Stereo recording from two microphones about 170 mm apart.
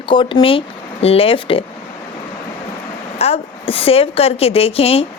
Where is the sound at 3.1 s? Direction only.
35° left (ahead or behind).